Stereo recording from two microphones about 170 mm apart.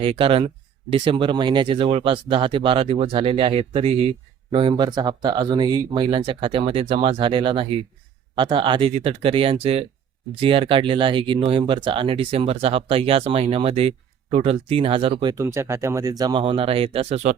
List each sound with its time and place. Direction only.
0.0 s speech: 35° right (ahead or behind)